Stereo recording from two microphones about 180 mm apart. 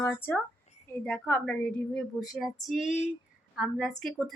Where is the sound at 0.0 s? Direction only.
15° left (ahead or behind).